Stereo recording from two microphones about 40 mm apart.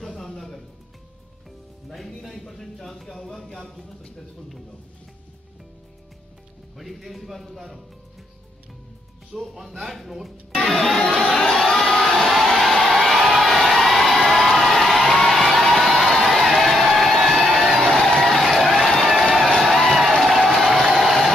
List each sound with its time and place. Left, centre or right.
0.0 s music: centre
1.9 s speech: centre
6.8 s speech: centre
9.3 s speech: centre
11.2 s crowd: centre
12.0 s a sound: centre
12.8 s crowd: centre
17.5 s a sound: centre
20.0 s crowd: centre